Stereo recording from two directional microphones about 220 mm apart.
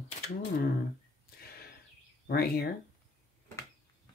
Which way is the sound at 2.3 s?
45° left (ahead or behind).